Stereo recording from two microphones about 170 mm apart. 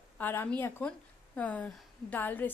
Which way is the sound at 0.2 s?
10° left (ahead or behind).